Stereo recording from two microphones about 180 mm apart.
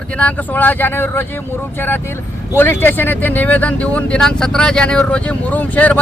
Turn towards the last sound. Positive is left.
turn(degrees=10)  # may be behind; listen again after turning